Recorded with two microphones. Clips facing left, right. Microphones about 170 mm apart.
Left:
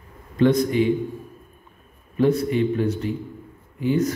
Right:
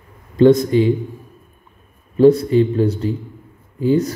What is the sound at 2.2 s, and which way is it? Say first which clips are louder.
A man's voice: right 8 dB; 35° right (ahead or behind).